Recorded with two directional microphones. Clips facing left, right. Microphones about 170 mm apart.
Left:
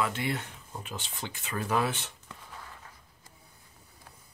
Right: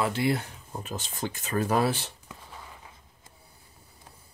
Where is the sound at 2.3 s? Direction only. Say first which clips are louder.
Right 1 dB; 15° right (ahead or behind).